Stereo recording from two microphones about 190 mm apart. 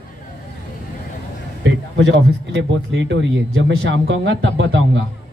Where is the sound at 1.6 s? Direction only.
65° right (ahead or behind).